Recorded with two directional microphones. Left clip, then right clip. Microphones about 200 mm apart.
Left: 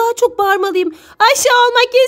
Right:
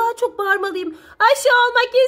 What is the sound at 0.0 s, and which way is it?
A woman's voice, 45° left (ahead or behind).